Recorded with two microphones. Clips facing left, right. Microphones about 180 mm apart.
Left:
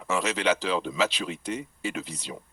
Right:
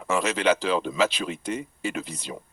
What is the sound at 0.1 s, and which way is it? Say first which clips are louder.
Speech: right 3 dB; 50° right (ahead or behind).